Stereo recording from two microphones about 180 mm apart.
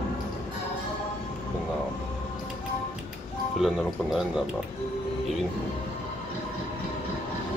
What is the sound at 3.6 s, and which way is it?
Speech, centre (ahead or behind).